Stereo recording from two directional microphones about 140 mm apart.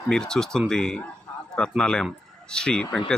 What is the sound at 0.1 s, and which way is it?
Speech, 5° left (ahead or behind).